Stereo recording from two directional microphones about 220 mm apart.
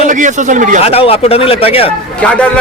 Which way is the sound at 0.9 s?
25° left (ahead or behind).